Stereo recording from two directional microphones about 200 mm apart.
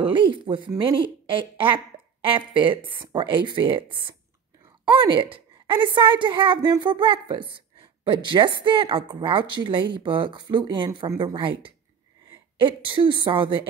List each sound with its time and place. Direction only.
0.0 s a woman's voice: 25° right (ahead or behind)